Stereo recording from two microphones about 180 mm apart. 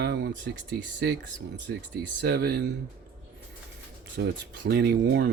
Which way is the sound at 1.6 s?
70° right (ahead or behind).